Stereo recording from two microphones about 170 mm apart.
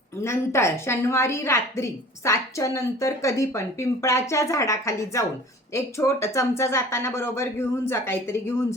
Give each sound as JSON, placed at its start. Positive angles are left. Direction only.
{"t": 0.2, "sound": "a woman's voice", "side_deg": 15}